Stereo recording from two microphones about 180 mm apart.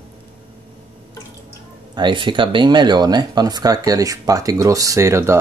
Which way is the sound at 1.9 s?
25° right (ahead or behind).